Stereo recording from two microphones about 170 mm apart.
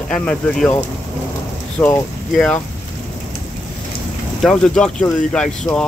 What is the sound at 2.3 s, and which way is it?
Speech, 5° left (ahead or behind).